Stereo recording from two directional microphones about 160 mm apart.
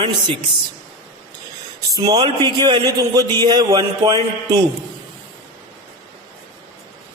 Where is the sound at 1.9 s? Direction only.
25° right (ahead or behind).